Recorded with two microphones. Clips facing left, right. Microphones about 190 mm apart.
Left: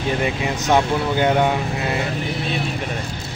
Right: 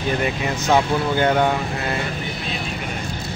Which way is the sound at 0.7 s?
15° left (ahead or behind).